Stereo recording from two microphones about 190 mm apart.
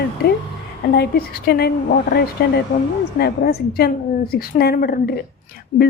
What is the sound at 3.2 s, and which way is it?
Speech, 55° left (ahead or behind).